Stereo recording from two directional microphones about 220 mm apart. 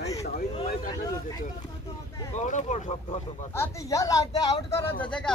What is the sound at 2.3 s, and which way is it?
Speech, 30° left (ahead or behind).